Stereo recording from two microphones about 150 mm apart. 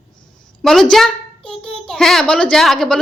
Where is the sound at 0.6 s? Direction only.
5° left (ahead or behind).